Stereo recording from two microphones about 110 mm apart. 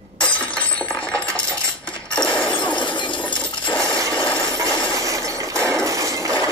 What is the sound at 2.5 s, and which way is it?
Shatter, 45° left (ahead or behind).